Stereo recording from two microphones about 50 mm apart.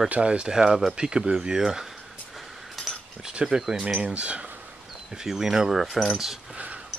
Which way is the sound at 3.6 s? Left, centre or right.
Centre.